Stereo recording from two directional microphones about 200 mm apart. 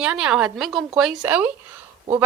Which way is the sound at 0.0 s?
5° right (ahead or behind).